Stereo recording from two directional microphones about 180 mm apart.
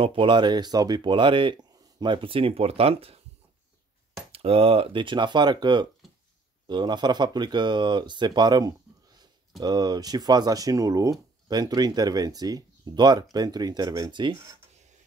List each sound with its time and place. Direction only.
0.0 s speech: 30° right (ahead or behind)
4.3 s speech: 30° right (ahead or behind)